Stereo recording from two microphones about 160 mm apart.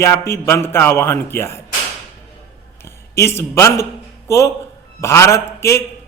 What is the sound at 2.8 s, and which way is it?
A man's voice, 15° left (ahead or behind).